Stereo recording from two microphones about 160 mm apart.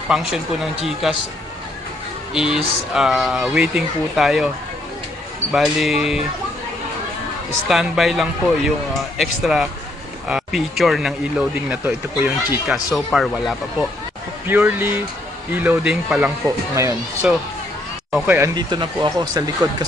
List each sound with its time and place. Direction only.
0.1 s speech: 5° right (ahead or behind)
2.3 s speech: 5° right (ahead or behind)
5.5 s speech: centre (ahead or behind)
7.6 s speech: 5° right (ahead or behind)
14.4 s speech: 10° right (ahead or behind)
16.4 s speech: 20° right (ahead or behind)
18.1 s speech: 5° right (ahead or behind)
18.4 s speech: 25° right (ahead or behind)